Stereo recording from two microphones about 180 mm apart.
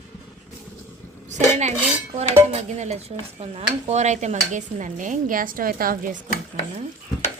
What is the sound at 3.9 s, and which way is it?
Speech, 40° right (ahead or behind).